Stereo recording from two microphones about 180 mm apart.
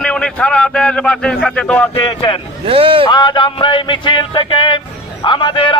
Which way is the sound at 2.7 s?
30° right (ahead or behind).